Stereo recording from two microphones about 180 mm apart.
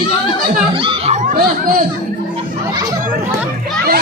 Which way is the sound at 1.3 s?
50° right (ahead or behind).